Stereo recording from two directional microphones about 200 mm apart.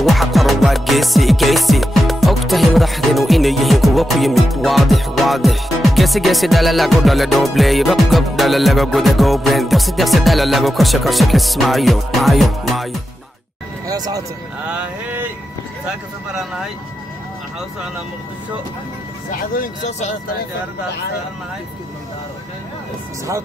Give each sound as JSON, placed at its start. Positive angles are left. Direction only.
{"t": 0.0, "sound": "music", "side_deg": 0}
{"t": 13.8, "sound": "speech", "side_deg": -20}
{"t": 14.7, "sound": "a sound", "side_deg": -5}
{"t": 19.5, "sound": "speech", "side_deg": 40}